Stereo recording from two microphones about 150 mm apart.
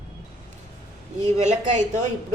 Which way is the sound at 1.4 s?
50° right (ahead or behind).